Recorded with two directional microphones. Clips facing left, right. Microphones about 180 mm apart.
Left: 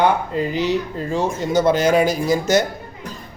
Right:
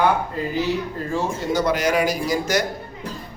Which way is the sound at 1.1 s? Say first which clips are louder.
Left 4 dB; 20° left (ahead or behind).